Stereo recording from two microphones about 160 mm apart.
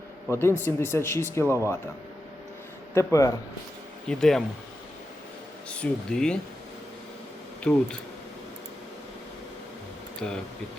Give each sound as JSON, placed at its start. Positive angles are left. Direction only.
{"t": 0.3, "sound": "a man's voice", "side_deg": 15}
{"t": 2.9, "sound": "a man's voice", "side_deg": 20}
{"t": 4.1, "sound": "speech", "side_deg": 5}
{"t": 5.6, "sound": "speech", "side_deg": 5}
{"t": 7.6, "sound": "speech", "side_deg": 5}
{"t": 10.2, "sound": "a man's voice", "side_deg": 5}